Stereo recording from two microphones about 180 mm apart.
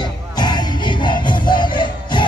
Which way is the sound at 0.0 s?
25° left (ahead or behind).